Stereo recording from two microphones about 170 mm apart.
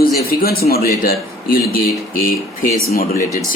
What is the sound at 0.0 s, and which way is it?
A man's voice, 65° left (ahead or behind).